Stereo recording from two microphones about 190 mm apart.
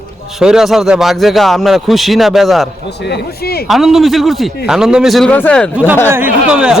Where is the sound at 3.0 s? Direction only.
60° left (ahead or behind).